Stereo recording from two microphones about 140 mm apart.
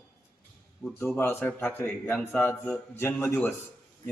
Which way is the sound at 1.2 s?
15° left (ahead or behind).